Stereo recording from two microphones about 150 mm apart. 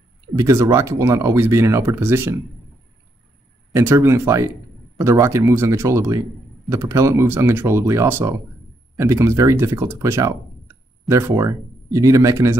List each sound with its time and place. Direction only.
0.4 s speech: 20° right (ahead or behind)
3.7 s speech: 15° right (ahead or behind)